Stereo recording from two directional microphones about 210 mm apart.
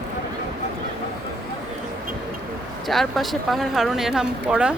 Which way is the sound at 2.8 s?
Centre (ahead or behind).